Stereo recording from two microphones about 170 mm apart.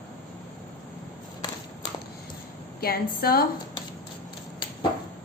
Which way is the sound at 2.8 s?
60° left (ahead or behind).